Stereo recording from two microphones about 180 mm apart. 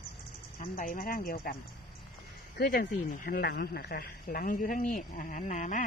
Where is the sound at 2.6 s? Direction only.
55° left (ahead or behind).